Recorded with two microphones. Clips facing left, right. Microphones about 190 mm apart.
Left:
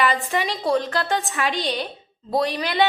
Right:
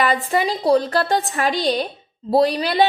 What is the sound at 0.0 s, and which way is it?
A woman's voice, 35° right (ahead or behind).